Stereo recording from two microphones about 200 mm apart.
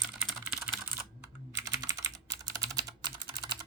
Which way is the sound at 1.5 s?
15° right (ahead or behind).